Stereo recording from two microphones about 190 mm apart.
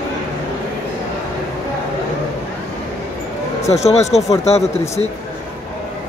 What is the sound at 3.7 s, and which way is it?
Speech, 35° left (ahead or behind).